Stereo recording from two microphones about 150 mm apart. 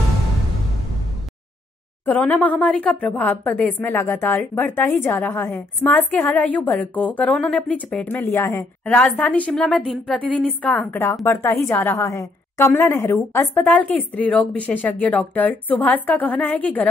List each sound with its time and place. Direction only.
2.0 s a woman's voice: 10° left (ahead or behind)
8.8 s a woman's voice: 5° left (ahead or behind)